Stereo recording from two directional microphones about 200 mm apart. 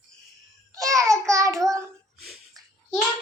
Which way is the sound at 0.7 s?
15° right (ahead or behind).